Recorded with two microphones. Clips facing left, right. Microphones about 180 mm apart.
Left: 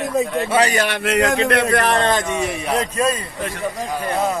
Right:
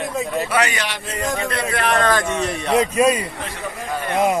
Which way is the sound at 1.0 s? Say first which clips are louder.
Left 7 dB; 80° left.